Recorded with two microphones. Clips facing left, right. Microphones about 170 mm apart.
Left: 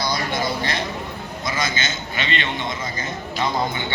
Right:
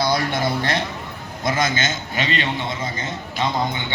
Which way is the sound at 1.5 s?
50° right (ahead or behind).